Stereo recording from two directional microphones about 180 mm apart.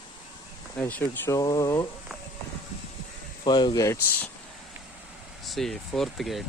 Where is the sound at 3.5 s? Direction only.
25° left (ahead or behind).